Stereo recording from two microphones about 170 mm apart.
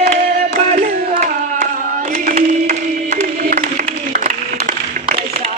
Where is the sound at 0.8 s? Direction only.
50° right (ahead or behind).